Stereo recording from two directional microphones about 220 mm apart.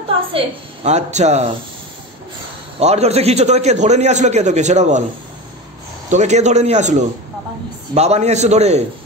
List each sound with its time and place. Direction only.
0.8 s a man's voice: 30° right (ahead or behind)
2.8 s a man's voice: 30° right (ahead or behind)
6.0 s a man's voice: 30° right (ahead or behind)